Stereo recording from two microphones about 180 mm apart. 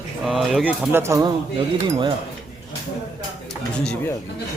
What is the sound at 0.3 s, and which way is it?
A man's voice, centre (ahead or behind).